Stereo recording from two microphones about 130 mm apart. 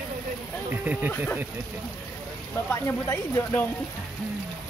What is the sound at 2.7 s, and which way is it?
Speech, 20° left (ahead or behind).